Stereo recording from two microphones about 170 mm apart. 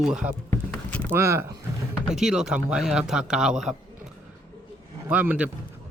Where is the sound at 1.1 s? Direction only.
15° right (ahead or behind).